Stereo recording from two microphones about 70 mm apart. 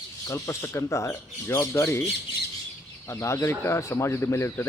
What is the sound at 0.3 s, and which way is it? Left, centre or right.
Speech, left.